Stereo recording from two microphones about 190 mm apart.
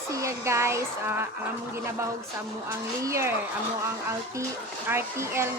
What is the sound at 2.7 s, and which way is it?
Speech, 15° right (ahead or behind).